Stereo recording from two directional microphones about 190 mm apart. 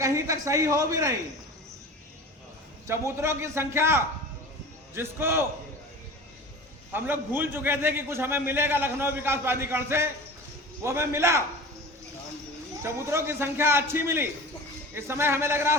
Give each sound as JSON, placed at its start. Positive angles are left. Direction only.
{"t": 0.0, "sound": "speech", "side_deg": -15}
{"t": 2.8, "sound": "a man's voice", "side_deg": -15}
{"t": 6.9, "sound": "a man's voice", "side_deg": -10}
{"t": 12.8, "sound": "a man's voice", "side_deg": -15}